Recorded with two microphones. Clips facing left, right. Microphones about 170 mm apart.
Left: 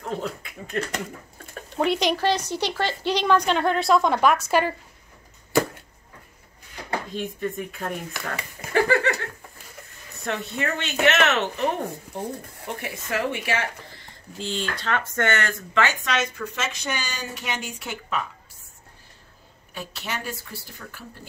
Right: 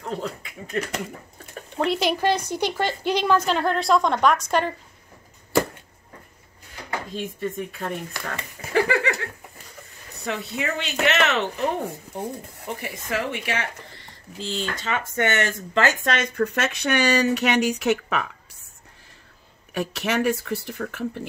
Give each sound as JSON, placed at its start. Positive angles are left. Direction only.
{"t": 0.0, "sound": "a sound", "side_deg": 0}
{"t": 2.1, "sound": "a woman's voice", "side_deg": -10}
{"t": 2.8, "sound": "speech", "side_deg": -50}
{"t": 3.1, "sound": "speech", "side_deg": -5}
{"t": 7.2, "sound": "speech", "side_deg": 0}
{"t": 12.6, "sound": "speech", "side_deg": 0}
{"t": 15.2, "sound": "speech", "side_deg": -20}
{"t": 15.7, "sound": "speech", "side_deg": -40}
{"t": 19.7, "sound": "speech", "side_deg": -85}